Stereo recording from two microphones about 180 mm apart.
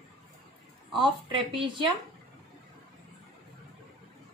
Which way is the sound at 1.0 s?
30° right (ahead or behind).